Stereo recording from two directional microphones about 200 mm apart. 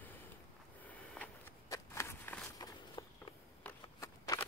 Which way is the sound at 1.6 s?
15° left (ahead or behind).